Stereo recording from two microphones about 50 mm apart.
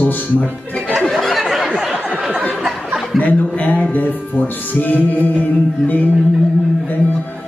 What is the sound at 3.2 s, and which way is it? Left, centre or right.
Music, left.